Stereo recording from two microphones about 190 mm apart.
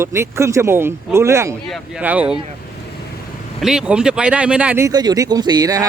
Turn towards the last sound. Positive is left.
turn(degrees=-20)  # may be behind; listen again after turning